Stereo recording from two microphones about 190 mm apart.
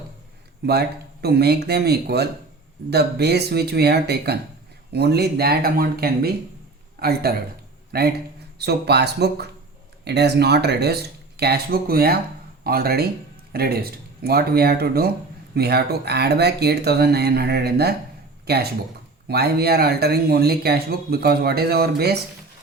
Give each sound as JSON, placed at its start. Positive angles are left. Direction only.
{"t": 0.6, "sound": "speech", "side_deg": -60}